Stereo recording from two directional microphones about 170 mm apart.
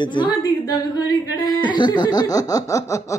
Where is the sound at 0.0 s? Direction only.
25° left (ahead or behind).